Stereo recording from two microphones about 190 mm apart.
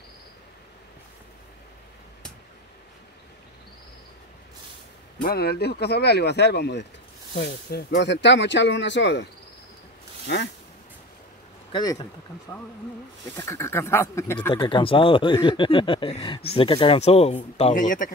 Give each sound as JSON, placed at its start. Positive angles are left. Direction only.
{"t": 5.2, "sound": "speech", "side_deg": 55}
{"t": 11.7, "sound": "speech", "side_deg": 25}
{"t": 13.4, "sound": "speech", "side_deg": 15}
{"t": 14.5, "sound": "speech", "side_deg": 25}